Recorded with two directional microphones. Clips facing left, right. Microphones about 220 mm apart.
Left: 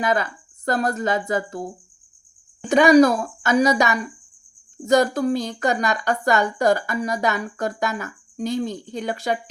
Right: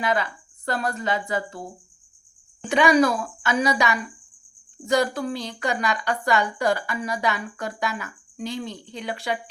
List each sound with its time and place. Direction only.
0.0 s a woman's voice: 45° left (ahead or behind)